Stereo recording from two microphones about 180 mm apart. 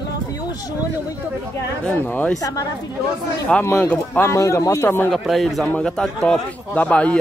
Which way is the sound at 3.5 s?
5° left (ahead or behind).